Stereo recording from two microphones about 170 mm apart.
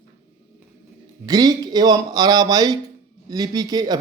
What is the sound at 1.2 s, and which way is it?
A man's voice, 25° right (ahead or behind).